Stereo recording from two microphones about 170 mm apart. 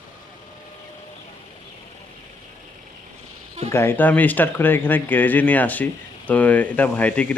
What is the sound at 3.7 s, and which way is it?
Speech, 15° left (ahead or behind).